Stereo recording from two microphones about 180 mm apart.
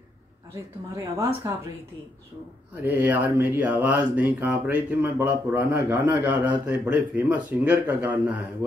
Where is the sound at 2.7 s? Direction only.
10° right (ahead or behind).